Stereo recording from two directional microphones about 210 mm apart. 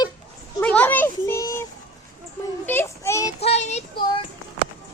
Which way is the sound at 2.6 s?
10° left (ahead or behind).